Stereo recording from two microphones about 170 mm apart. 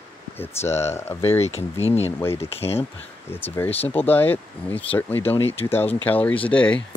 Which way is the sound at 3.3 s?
10° left (ahead or behind).